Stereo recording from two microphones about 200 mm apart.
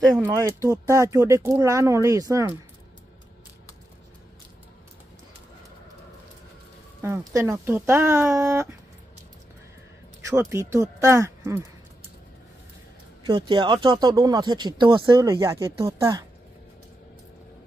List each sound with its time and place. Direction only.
0.1 s speech: 15° right (ahead or behind)
7.0 s speech: 15° right (ahead or behind)
10.3 s speech: 15° right (ahead or behind)
13.3 s speech: 20° right (ahead or behind)